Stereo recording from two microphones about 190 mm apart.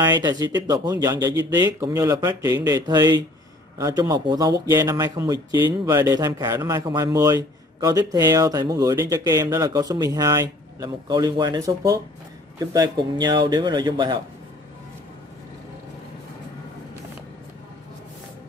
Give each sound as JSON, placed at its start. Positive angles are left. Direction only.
{"t": 0.0, "sound": "speech", "side_deg": -20}